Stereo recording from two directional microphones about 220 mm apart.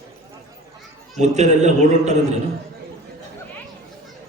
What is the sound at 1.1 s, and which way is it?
A man's voice, 30° right (ahead or behind).